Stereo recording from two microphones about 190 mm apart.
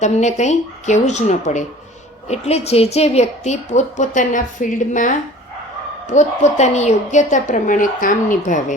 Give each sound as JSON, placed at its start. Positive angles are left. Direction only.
{"t": 0.0, "sound": "a woman's voice", "side_deg": 40}